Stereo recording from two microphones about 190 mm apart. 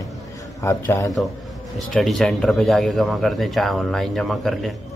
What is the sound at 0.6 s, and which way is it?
Speech, 15° left (ahead or behind).